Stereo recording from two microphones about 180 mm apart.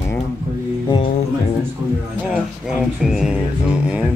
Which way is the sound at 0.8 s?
30° left (ahead or behind).